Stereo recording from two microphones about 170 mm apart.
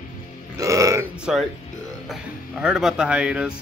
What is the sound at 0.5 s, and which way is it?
Speech, 20° right (ahead or behind).